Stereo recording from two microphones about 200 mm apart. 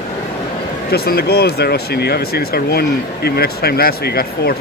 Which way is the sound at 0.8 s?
50° left (ahead or behind).